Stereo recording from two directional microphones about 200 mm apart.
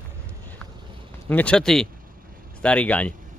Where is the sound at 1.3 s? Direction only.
5° left (ahead or behind).